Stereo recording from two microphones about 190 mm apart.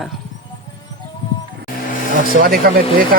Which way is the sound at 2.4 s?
50° right (ahead or behind).